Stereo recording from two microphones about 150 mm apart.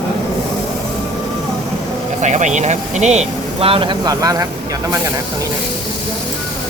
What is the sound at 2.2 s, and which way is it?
Speech, 55° right (ahead or behind).